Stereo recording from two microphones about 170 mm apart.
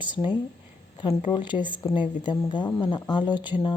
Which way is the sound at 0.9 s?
25° left (ahead or behind).